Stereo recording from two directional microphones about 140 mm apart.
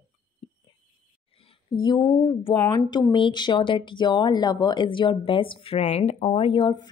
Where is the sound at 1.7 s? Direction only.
35° left (ahead or behind).